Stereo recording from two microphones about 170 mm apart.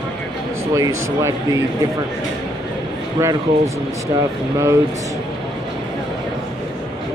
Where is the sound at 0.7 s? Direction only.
20° right (ahead or behind).